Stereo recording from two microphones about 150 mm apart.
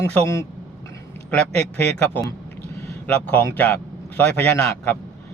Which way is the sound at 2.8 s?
15° left (ahead or behind).